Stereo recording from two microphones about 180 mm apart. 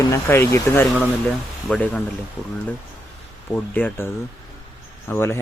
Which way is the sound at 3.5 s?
10° left (ahead or behind).